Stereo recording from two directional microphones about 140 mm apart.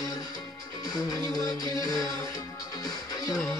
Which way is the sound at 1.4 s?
25° left (ahead or behind).